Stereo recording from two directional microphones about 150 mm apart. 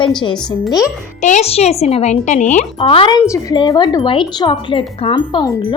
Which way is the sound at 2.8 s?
40° left (ahead or behind).